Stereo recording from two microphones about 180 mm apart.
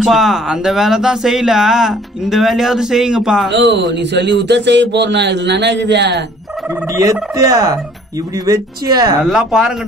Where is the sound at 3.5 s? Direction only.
75° right (ahead or behind).